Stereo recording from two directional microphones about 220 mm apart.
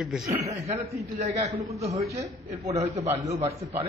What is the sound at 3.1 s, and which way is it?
Speech, 15° right (ahead or behind).